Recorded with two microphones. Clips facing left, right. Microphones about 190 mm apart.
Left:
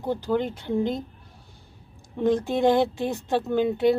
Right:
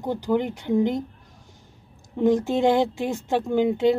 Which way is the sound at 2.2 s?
15° right (ahead or behind).